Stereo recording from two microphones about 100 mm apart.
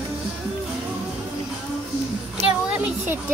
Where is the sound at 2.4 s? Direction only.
15° right (ahead or behind).